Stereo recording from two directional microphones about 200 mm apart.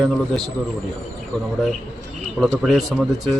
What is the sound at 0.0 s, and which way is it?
Speech, centre (ahead or behind).